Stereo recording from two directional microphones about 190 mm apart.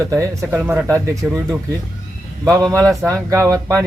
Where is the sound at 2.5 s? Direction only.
20° right (ahead or behind).